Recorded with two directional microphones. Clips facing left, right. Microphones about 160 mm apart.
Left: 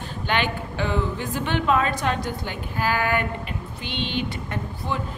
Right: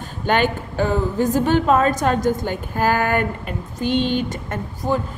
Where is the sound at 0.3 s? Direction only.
45° right (ahead or behind).